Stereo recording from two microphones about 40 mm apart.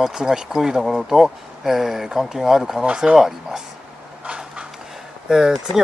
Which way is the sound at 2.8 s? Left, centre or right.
Right.